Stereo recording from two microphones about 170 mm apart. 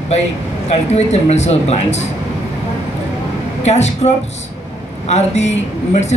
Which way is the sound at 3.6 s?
40° left (ahead or behind).